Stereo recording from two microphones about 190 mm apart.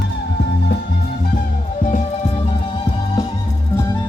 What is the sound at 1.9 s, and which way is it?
Music, 40° left (ahead or behind).